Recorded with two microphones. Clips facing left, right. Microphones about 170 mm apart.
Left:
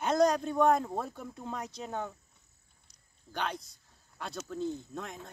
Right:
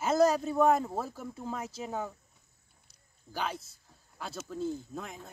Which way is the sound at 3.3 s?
5° right (ahead or behind).